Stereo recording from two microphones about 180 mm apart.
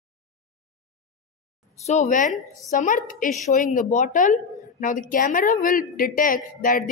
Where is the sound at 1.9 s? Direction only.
40° left (ahead or behind).